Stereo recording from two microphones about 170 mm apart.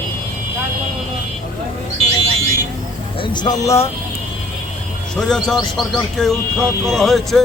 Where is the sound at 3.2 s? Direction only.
25° left (ahead or behind).